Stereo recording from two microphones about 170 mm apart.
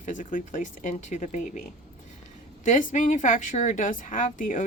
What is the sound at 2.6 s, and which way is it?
A woman's voice, 50° left (ahead or behind).